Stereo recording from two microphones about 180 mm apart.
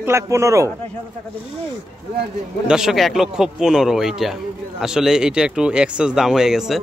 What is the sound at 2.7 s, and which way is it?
A man's voice, centre (ahead or behind).